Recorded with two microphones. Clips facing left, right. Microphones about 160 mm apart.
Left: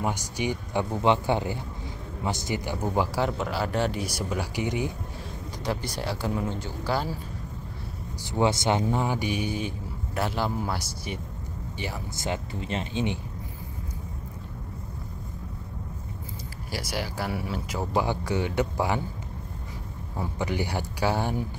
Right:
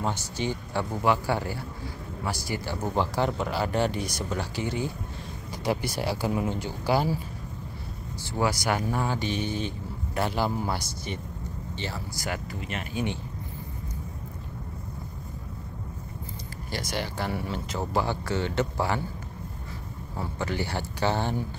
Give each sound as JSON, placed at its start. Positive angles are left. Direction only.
{"t": 0.0, "sound": "speech", "side_deg": 15}
{"t": 5.6, "sound": "speech", "side_deg": -10}
{"t": 8.2, "sound": "speech", "side_deg": 20}
{"t": 11.8, "sound": "speech", "side_deg": 20}
{"t": 16.7, "sound": "speech", "side_deg": 5}
{"t": 20.2, "sound": "speech", "side_deg": 15}